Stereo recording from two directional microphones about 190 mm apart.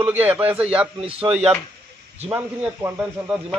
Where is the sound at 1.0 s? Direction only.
30° right (ahead or behind).